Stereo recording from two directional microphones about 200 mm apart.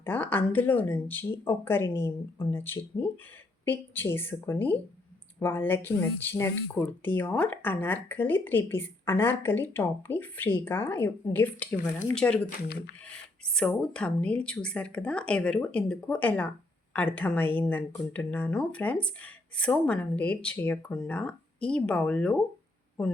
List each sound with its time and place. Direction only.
0.0 s speech: 10° left (ahead or behind)
12.5 s speech: 55° left (ahead or behind)
13.0 s speech: 5° left (ahead or behind)